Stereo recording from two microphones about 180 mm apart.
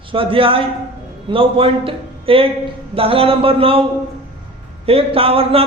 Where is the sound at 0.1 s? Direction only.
30° right (ahead or behind).